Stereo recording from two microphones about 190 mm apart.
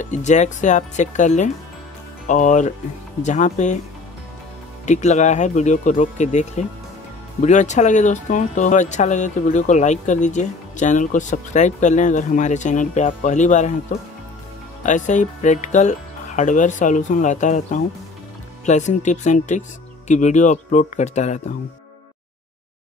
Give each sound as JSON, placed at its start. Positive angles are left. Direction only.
{"t": 0.0, "sound": "speech", "side_deg": 40}
{"t": 4.8, "sound": "speech", "side_deg": 40}
{"t": 14.8, "sound": "speech", "side_deg": 40}